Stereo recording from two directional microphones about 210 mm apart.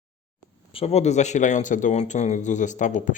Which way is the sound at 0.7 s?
30° left (ahead or behind).